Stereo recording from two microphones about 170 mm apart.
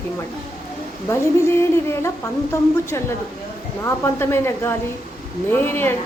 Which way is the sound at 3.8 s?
15° left (ahead or behind).